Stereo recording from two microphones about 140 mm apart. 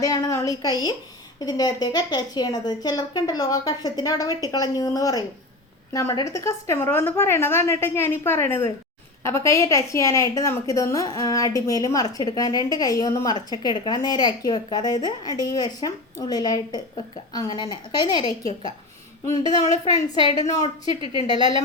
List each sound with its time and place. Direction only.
0.0 s a woman's voice: 25° left (ahead or behind)
19.6 s a woman's voice: 55° left (ahead or behind)
20.1 s a woman's voice: 35° right (ahead or behind)